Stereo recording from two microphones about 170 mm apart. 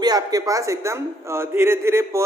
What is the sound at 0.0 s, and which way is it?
A man's voice, 20° right (ahead or behind).